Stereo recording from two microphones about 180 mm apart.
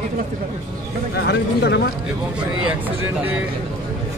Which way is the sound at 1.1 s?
70° left (ahead or behind).